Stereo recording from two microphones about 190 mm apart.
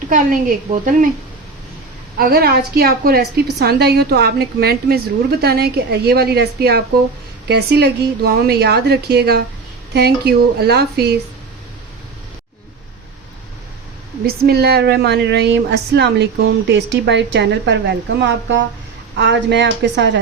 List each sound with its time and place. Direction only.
0.1 s a woman's voice: 45° right (ahead or behind)
2.1 s speech: 55° right (ahead or behind)
14.3 s speech: 55° right (ahead or behind)